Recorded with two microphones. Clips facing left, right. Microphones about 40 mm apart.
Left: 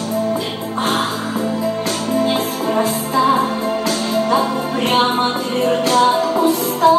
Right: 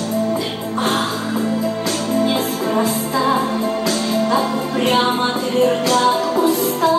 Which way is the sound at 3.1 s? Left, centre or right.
Centre.